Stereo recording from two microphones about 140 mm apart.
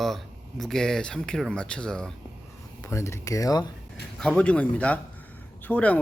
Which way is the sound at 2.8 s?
20° left (ahead or behind).